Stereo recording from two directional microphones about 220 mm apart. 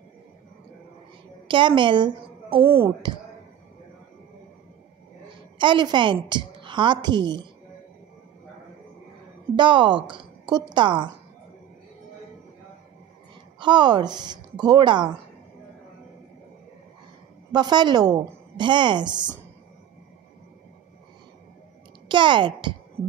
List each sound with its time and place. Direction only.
1.5 s a woman's voice: 20° right (ahead or behind)
2.6 s speech: 10° right (ahead or behind)
5.6 s a woman's voice: 20° right (ahead or behind)
9.6 s a woman's voice: 20° right (ahead or behind)
13.6 s a woman's voice: 20° right (ahead or behind)
17.5 s a woman's voice: 20° right (ahead or behind)
22.0 s a child's voice: 20° right (ahead or behind)